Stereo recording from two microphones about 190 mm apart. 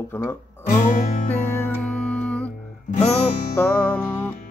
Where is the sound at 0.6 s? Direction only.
40° left (ahead or behind).